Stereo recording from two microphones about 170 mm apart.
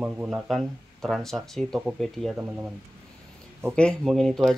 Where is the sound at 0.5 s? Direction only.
Centre (ahead or behind).